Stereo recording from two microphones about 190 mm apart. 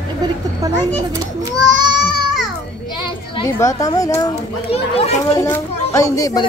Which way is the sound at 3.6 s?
15° left (ahead or behind).